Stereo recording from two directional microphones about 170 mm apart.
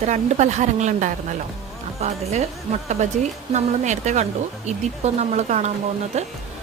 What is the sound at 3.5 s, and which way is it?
Speech, 45° right (ahead or behind).